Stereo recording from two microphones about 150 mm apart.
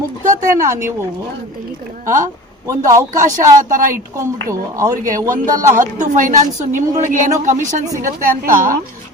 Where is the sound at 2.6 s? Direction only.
20° right (ahead or behind).